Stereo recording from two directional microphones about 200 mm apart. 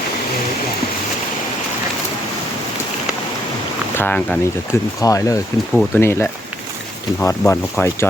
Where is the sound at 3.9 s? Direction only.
10° left (ahead or behind).